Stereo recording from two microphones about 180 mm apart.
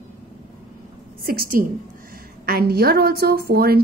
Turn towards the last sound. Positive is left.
turn(degrees=-60)  # may be behind; listen again after turning